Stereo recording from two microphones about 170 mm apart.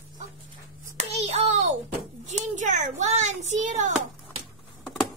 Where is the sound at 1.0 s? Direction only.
40° right (ahead or behind).